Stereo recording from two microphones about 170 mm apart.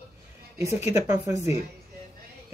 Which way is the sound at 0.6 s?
40° left (ahead or behind).